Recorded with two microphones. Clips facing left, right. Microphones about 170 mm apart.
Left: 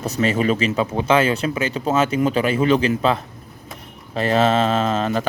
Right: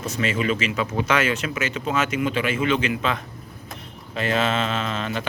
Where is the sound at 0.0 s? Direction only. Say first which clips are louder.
Left 5 dB; 40° left (ahead or behind).